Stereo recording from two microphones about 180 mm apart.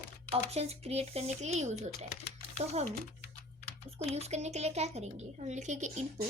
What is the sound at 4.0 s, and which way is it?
A woman's voice, 35° right (ahead or behind).